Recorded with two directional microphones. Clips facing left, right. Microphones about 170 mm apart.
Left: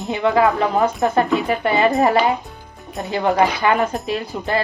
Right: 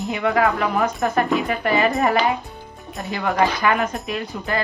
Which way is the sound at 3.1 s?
30° left (ahead or behind).